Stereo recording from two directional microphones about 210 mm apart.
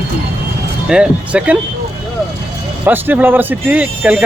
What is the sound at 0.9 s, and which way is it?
Speech, 5° right (ahead or behind).